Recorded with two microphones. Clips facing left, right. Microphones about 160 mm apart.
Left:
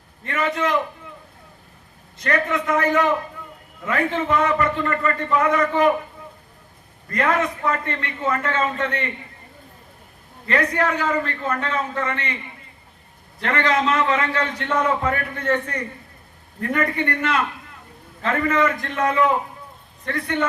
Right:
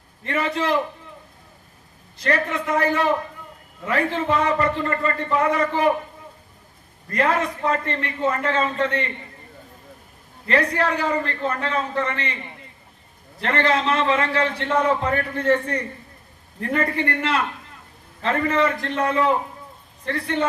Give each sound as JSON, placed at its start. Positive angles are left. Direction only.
{"t": 0.3, "sound": "a man's voice", "side_deg": -30}
{"t": 2.1, "sound": "a man's voice", "side_deg": -30}
{"t": 7.2, "sound": "a man's voice", "side_deg": -30}
{"t": 10.5, "sound": "a man's voice", "side_deg": -30}
{"t": 13.4, "sound": "a man's voice", "side_deg": -30}
{"t": 16.6, "sound": "a man's voice", "side_deg": -30}